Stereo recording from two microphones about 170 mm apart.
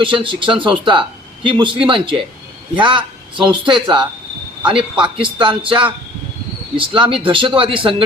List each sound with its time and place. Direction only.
0.0 s a man's voice: 30° right (ahead or behind)